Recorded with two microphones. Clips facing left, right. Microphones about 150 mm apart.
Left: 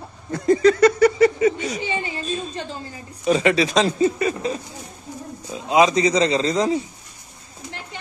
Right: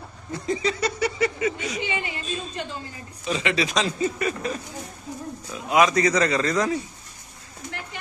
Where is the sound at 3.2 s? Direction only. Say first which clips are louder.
Left 7 dB; 45° left (ahead or behind); by 6.8 s 25° left (ahead or behind).